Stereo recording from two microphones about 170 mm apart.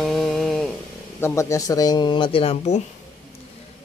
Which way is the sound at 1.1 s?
15° left (ahead or behind).